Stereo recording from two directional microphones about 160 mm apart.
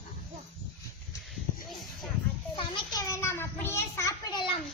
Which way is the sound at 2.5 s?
30° left (ahead or behind).